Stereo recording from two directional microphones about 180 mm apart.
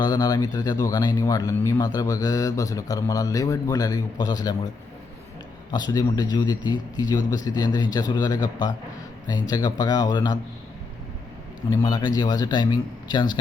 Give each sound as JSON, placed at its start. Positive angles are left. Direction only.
{"t": 0.0, "sound": "speech", "side_deg": 20}
{"t": 5.7, "sound": "speech", "side_deg": 20}
{"t": 11.7, "sound": "speech", "side_deg": 20}